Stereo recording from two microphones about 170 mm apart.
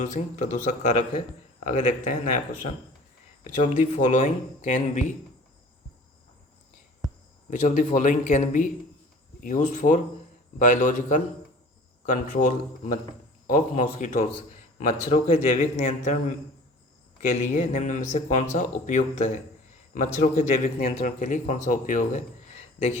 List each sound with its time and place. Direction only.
0.0 s speech: 45° left (ahead or behind)
7.5 s speech: 50° left (ahead or behind)
17.2 s speech: 45° left (ahead or behind)